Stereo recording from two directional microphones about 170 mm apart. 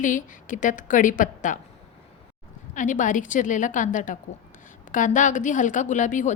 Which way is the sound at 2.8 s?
50° left (ahead or behind).